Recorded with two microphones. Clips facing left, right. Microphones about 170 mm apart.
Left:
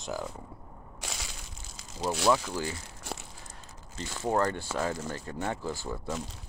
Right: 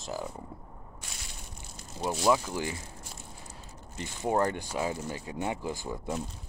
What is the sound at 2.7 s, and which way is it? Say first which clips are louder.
Crumpling: left 4 dB; 75° left (ahead or behind).